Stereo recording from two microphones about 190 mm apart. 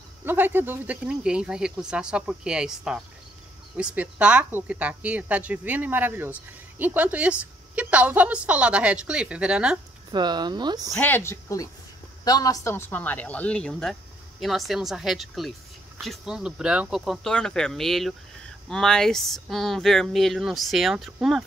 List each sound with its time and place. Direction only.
0.2 s a woman's voice: 10° right (ahead or behind)
10.1 s speech: 25° right (ahead or behind)
10.9 s speech: 10° left (ahead or behind)